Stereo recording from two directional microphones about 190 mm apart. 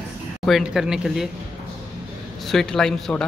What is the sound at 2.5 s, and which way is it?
Speech, centre (ahead or behind).